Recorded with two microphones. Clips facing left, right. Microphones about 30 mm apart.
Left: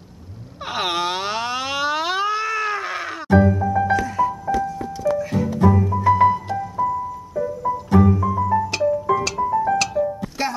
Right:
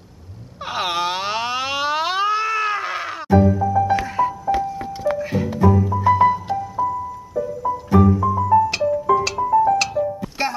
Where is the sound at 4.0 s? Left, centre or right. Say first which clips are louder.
Even; right.